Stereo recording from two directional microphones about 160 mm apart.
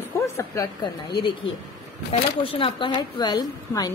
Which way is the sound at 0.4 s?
25° left (ahead or behind).